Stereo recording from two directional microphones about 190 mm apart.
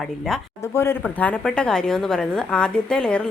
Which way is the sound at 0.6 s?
15° left (ahead or behind).